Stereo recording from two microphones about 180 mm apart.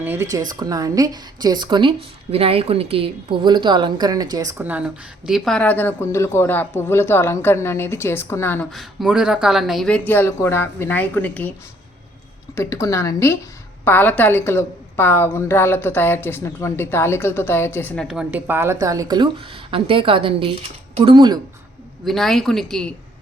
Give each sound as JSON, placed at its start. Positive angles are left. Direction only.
{"t": 0.0, "sound": "a woman's voice", "side_deg": -15}
{"t": 8.7, "sound": "a woman's voice", "side_deg": 0}
{"t": 12.5, "sound": "a woman's voice", "side_deg": 15}
{"t": 22.0, "sound": "speech", "side_deg": 0}